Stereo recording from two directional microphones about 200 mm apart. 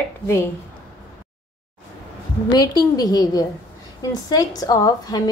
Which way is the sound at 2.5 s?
20° left (ahead or behind).